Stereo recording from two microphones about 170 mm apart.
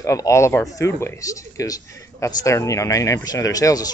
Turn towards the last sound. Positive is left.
turn(degrees=20)  # may be behind; listen again after turning